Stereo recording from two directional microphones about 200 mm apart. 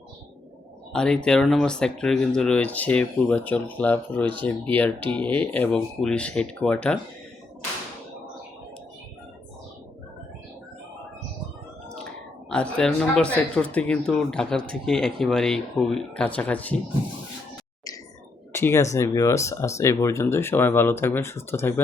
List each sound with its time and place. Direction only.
0.9 s speech: 5° left (ahead or behind)
12.5 s speech: 5° left (ahead or behind)
18.5 s speech: 15° left (ahead or behind)